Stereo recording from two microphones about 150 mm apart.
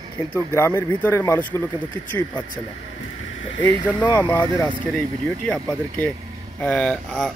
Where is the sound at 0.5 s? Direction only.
15° left (ahead or behind).